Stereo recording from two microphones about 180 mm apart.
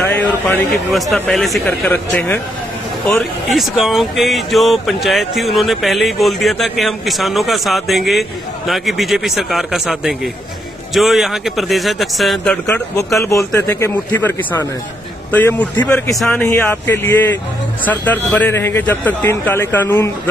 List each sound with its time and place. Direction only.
0.0 s speech: 10° left (ahead or behind)
1.7 s a man's voice: 10° left (ahead or behind)
3.1 s speech: centre (ahead or behind)
12.6 s a man's voice: 15° left (ahead or behind)